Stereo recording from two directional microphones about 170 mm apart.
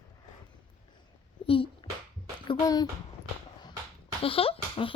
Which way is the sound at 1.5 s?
30° left (ahead or behind).